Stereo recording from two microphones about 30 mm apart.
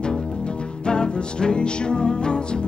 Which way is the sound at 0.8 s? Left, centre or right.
Left.